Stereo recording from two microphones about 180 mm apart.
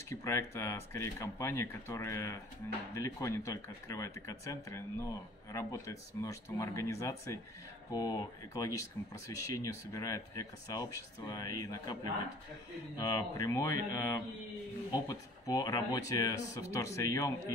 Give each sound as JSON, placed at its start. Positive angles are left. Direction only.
{"t": 0.1, "sound": "speech", "side_deg": 15}